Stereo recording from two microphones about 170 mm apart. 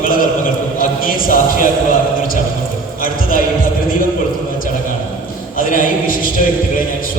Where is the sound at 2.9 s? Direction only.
55° left (ahead or behind).